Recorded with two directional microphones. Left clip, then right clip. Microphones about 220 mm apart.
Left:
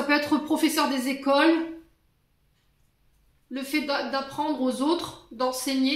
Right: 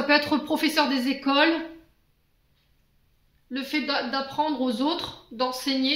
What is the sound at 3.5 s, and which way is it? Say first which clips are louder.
A woman's voice: even; 40° right (ahead or behind).